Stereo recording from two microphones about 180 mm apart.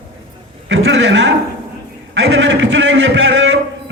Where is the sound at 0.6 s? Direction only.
85° right.